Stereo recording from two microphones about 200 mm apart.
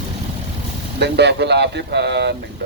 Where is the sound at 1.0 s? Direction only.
55° right (ahead or behind).